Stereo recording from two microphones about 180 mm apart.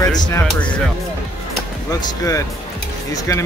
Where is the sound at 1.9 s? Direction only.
20° left (ahead or behind).